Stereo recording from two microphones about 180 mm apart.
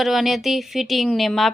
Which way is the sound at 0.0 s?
Centre (ahead or behind).